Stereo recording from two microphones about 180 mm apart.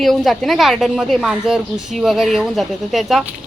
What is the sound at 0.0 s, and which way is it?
A woman's voice, centre (ahead or behind).